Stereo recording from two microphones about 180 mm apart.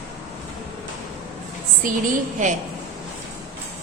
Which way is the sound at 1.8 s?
50° right (ahead or behind).